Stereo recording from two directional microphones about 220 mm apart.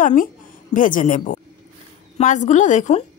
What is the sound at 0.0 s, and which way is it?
A woman's voice, 40° left (ahead or behind).